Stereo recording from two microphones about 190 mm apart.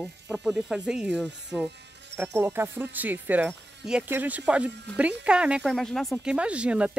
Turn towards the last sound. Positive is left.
turn(degrees=-5)  # may be behind; listen again after turning